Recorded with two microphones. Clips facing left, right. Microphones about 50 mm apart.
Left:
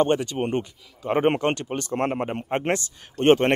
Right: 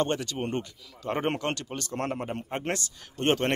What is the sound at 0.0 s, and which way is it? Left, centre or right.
Speech, left.